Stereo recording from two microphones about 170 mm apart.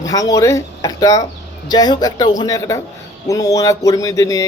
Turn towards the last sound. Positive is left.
turn(degrees=20)  # may be behind; listen again after turning